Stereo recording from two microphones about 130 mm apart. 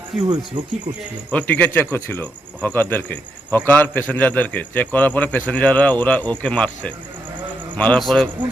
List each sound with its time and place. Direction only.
0.2 s speech: 35° right (ahead or behind)
1.3 s speech: 10° left (ahead or behind)